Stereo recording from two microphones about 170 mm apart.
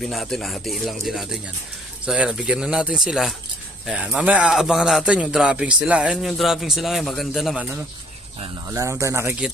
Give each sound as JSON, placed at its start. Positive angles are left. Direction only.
{"t": 0.0, "sound": "a man's voice", "side_deg": 0}
{"t": 8.6, "sound": "speech", "side_deg": -15}